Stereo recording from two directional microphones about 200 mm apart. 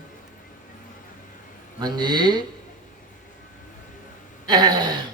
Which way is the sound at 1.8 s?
20° right (ahead or behind).